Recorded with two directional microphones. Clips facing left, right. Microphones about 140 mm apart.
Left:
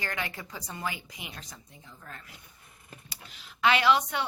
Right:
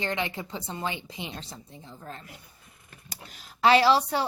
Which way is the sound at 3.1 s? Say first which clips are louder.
Right 3 dB; 45° right (ahead or behind).